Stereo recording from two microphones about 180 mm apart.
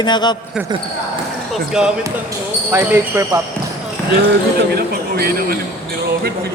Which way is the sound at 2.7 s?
15° right (ahead or behind).